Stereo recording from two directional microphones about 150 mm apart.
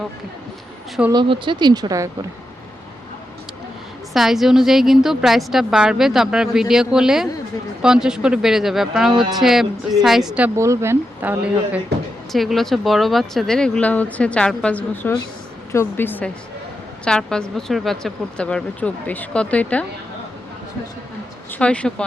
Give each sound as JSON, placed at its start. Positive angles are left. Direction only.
{"t": 1.1, "sound": "speech", "side_deg": -35}
{"t": 4.1, "sound": "a woman's voice", "side_deg": 0}
{"t": 12.3, "sound": "a woman's voice", "side_deg": 0}
{"t": 21.5, "sound": "speech", "side_deg": 10}